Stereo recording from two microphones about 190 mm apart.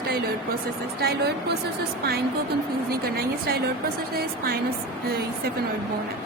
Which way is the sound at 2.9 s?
55° right (ahead or behind).